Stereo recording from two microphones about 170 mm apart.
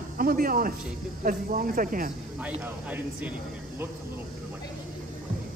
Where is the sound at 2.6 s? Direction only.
10° right (ahead or behind).